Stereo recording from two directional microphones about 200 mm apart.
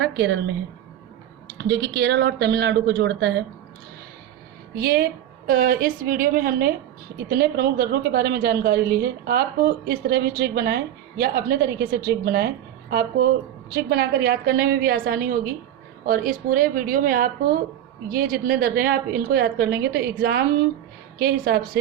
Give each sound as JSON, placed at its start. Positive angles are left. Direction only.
{"t": 0.0, "sound": "speech", "side_deg": -60}
{"t": 1.5, "sound": "speech", "side_deg": -55}
{"t": 4.8, "sound": "a woman's voice", "side_deg": -50}